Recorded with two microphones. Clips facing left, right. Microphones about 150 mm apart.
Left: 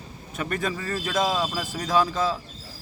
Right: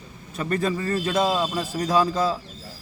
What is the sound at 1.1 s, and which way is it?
Speech, 5° right (ahead or behind).